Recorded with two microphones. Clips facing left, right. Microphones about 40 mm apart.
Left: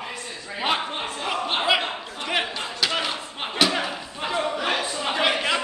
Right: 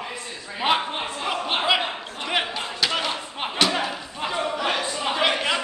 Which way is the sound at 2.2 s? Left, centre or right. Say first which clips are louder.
Right 1 dB; centre.